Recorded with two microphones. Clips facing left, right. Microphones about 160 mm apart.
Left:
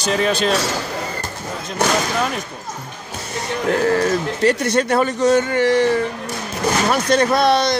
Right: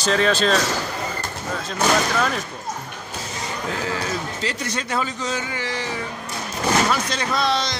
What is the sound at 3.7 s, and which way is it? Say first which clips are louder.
A man's voice: left 11 dB; 60° left (ahead or behind).